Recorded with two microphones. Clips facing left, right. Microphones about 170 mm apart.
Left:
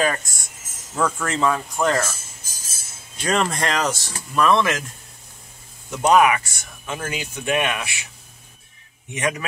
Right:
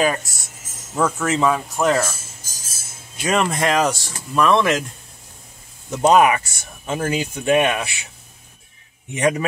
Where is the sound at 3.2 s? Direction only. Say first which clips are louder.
Right 2 dB; 10° right (ahead or behind).